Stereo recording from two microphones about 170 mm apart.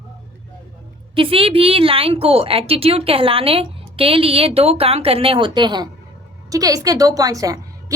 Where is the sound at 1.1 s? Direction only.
30° right (ahead or behind).